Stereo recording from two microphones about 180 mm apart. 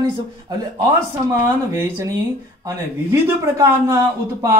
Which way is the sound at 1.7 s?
15° right (ahead or behind).